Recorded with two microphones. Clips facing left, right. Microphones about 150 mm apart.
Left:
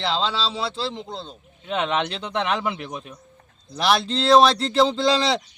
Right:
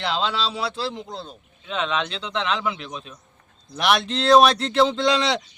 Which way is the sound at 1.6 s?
55° left (ahead or behind).